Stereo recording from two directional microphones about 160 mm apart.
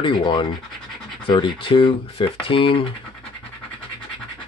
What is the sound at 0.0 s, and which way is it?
Speech, 30° left (ahead or behind).